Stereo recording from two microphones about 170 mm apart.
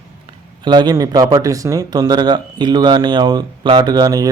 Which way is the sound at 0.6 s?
25° right (ahead or behind).